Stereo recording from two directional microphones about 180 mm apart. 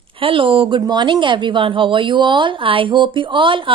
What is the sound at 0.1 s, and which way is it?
Speech, 30° right (ahead or behind).